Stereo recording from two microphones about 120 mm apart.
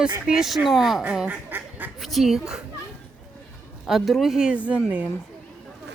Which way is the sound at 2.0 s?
Centre (ahead or behind).